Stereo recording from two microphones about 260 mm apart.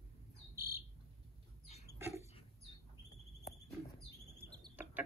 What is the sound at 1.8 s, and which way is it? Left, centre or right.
Dog, centre.